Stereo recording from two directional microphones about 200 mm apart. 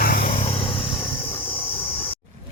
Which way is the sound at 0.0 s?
45° left (ahead or behind).